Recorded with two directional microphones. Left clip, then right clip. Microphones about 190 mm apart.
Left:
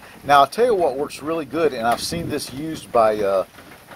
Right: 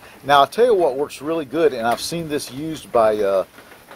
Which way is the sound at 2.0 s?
35° right (ahead or behind).